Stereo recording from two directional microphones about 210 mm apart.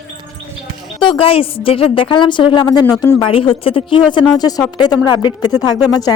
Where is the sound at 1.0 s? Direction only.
25° left (ahead or behind).